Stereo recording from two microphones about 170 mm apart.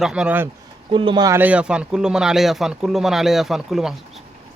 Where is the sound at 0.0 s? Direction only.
5° right (ahead or behind).